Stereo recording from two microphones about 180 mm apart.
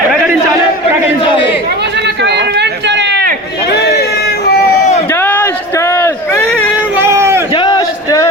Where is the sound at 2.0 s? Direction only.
70° right (ahead or behind).